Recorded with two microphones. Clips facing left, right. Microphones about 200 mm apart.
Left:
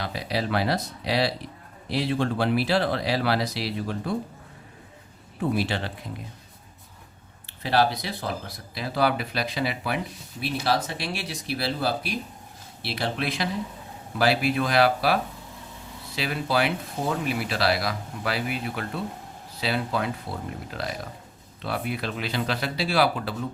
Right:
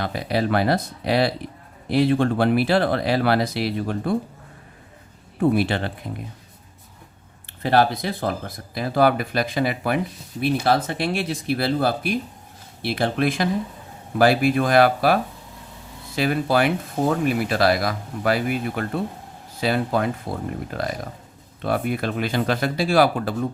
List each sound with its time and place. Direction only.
0.0 s speech: 50° right (ahead or behind)
5.4 s speech: 55° right (ahead or behind)
7.4 s speech: 50° right (ahead or behind)